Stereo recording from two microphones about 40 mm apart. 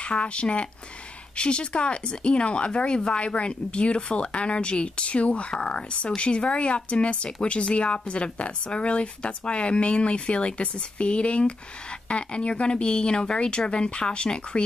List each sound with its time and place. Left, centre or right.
0.0 s speech: left